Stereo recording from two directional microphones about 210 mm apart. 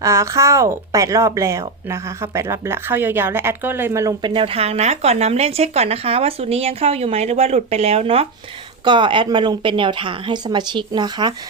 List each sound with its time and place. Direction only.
0.0 s a woman's voice: 15° right (ahead or behind)